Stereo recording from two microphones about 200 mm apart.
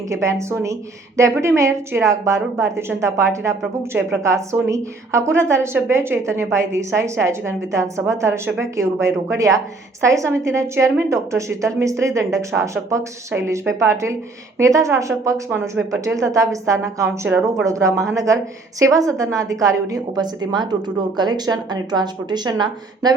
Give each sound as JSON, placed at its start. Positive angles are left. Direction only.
{"t": 0.1, "sound": "a woman's voice", "side_deg": -15}
{"t": 3.6, "sound": "a woman's voice", "side_deg": 0}
{"t": 4.2, "sound": "a woman's voice", "side_deg": -15}